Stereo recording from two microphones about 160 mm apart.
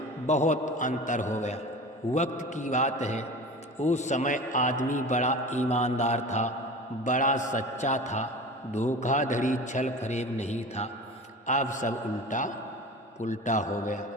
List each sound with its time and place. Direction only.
0.3 s a man's voice: 45° left (ahead or behind)